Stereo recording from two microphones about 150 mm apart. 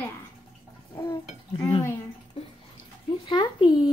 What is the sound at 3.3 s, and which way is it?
Speech, 30° left (ahead or behind).